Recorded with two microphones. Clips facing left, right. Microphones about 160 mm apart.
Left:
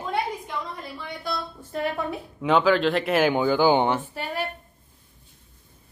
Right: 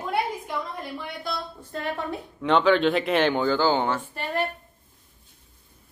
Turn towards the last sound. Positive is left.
turn(degrees=5)  # may be behind; listen again after turning